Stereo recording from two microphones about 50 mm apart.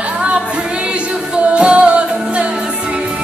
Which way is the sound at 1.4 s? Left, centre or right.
Right.